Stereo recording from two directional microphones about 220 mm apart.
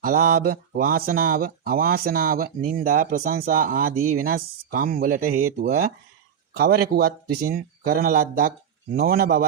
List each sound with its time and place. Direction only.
0.0 s speech: 40° right (ahead or behind)
6.9 s a man's voice: 45° right (ahead or behind)